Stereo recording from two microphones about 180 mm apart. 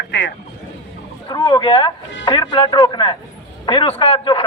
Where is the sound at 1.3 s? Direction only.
25° left (ahead or behind).